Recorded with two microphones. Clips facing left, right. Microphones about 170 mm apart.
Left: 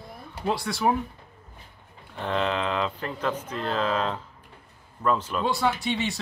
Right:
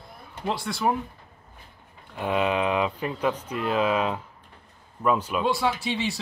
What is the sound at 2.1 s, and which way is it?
A child's voice, 10° right (ahead or behind).